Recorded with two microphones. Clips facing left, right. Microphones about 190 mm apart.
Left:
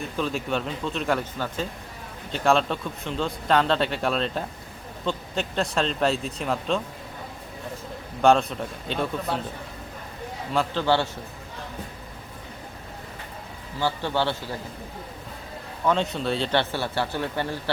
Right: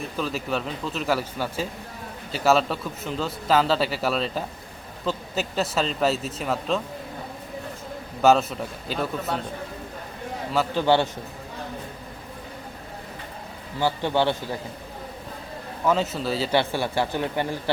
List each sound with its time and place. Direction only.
0.0 s a man's voice: centre (ahead or behind)
8.2 s a man's voice: 5° right (ahead or behind)
10.5 s a man's voice: 5° right (ahead or behind)
10.8 s speech: 15° right (ahead or behind)
13.7 s speech: 15° right (ahead or behind)
15.8 s speech: 5° right (ahead or behind)